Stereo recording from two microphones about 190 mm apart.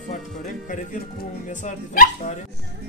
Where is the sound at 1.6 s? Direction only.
40° left (ahead or behind).